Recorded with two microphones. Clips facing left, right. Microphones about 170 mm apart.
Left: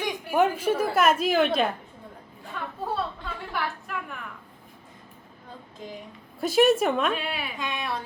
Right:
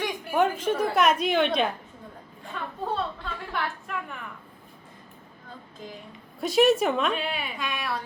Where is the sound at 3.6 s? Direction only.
Centre (ahead or behind).